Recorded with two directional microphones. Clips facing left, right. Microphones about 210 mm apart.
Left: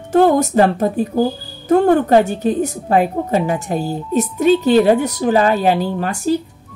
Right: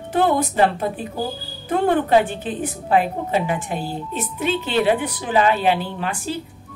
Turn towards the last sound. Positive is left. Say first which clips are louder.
# left 8 dB
turn(degrees=40)  # may be behind; listen again after turning